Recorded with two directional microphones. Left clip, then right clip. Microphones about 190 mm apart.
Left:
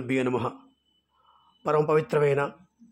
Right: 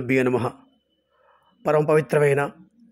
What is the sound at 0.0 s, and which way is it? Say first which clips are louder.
Speech: right 5 dB; 20° right (ahead or behind).